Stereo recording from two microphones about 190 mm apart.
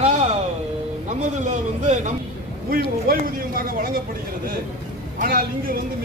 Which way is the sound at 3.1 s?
50° right (ahead or behind).